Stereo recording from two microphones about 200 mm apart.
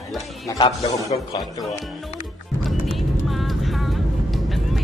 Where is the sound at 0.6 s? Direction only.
15° left (ahead or behind).